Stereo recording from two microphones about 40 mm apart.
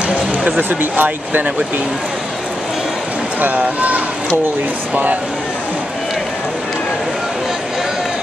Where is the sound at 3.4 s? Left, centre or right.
Right.